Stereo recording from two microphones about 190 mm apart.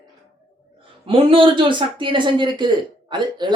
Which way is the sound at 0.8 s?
25° right (ahead or behind).